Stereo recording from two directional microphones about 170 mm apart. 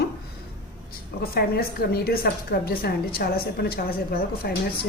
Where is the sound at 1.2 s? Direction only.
65° left (ahead or behind).